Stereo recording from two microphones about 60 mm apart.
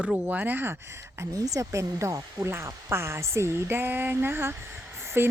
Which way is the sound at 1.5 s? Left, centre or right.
Right.